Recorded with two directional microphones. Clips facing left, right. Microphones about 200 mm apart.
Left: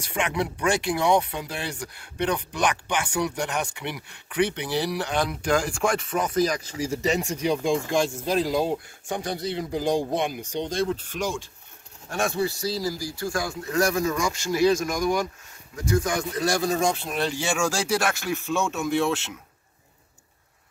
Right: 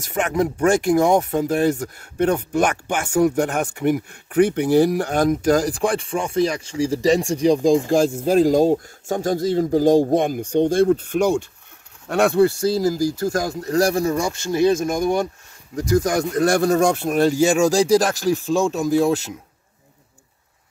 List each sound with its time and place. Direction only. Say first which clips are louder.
0.0 s speech: right 6 dB; 45° right (ahead or behind)
8.3 s speech: right 11 dB; 45° right (ahead or behind); by 15.2 s 25° right (ahead or behind)
15.7 s speech: right 6 dB; 35° right (ahead or behind)